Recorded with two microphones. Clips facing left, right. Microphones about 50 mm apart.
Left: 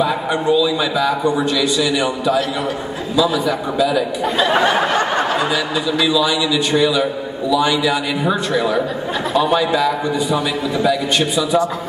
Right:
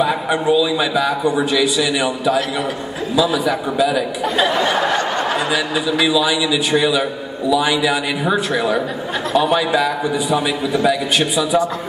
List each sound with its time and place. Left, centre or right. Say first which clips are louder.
0.0 s a man's voice: even; centre
4.7 s snicker: left 1 dB; left
5.3 s a man's voice: even; centre